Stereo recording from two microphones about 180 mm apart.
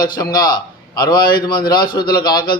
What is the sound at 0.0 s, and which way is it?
A man's voice, 20° left (ahead or behind).